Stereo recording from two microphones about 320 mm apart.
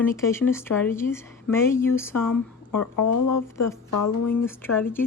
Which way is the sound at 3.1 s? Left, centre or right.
Left.